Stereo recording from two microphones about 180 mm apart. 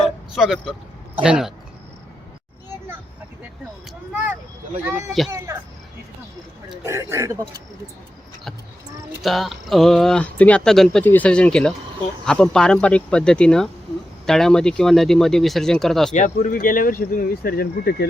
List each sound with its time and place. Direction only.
0.3 s speech: centre (ahead or behind)
4.1 s a man's voice: 10° right (ahead or behind)
6.8 s a man's voice: 15° right (ahead or behind)
9.2 s speech: centre (ahead or behind)
16.1 s speech: 45° left (ahead or behind); by 18.0 s 60° left (ahead or behind)